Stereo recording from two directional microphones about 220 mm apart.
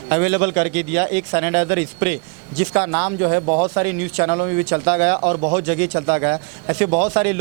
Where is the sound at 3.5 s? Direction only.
35° right (ahead or behind).